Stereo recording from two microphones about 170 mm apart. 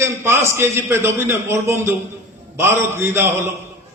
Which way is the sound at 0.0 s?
15° right (ahead or behind).